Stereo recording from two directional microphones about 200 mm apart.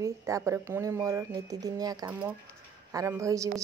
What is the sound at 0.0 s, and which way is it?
Speech, 15° right (ahead or behind).